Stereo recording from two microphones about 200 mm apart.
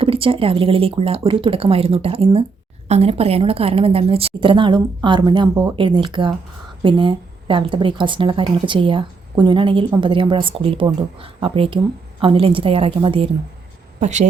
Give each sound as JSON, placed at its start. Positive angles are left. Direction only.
{"t": 0.0, "sound": "a woman's voice", "side_deg": -25}